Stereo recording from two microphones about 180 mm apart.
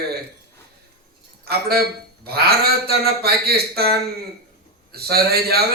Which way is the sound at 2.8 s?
60° right (ahead or behind).